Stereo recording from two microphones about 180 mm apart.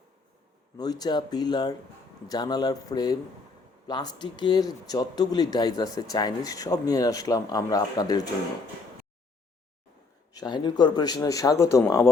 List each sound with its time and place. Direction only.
0.8 s speech: 20° left (ahead or behind)
10.3 s speech: 25° left (ahead or behind)